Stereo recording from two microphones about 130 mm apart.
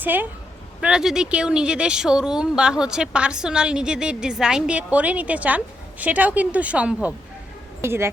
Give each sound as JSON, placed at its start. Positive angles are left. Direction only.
{"t": 0.0, "sound": "a woman's voice", "side_deg": -15}